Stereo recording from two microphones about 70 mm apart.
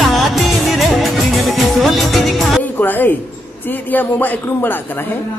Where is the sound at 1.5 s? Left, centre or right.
Centre.